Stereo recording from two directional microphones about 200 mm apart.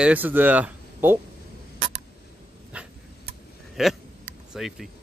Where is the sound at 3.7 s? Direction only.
Centre (ahead or behind).